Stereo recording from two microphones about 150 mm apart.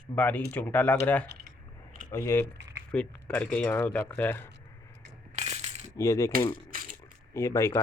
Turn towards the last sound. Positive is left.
turn(degrees=20)  # may be behind; listen again after turning